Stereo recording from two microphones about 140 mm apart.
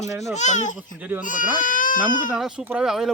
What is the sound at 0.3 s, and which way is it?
Speech, 60° left (ahead or behind).